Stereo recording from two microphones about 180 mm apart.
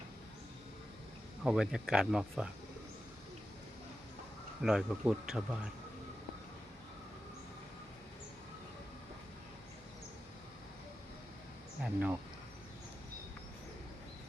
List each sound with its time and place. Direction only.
1.5 s speech: 5° right (ahead or behind)
4.6 s speech: 5° right (ahead or behind)
11.8 s speech: 5° right (ahead or behind)